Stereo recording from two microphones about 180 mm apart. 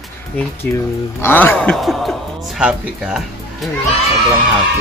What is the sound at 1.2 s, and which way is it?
Speech, 10° left (ahead or behind).